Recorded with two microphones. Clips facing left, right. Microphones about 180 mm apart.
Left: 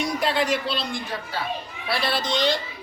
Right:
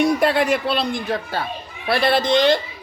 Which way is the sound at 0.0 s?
60° right (ahead or behind).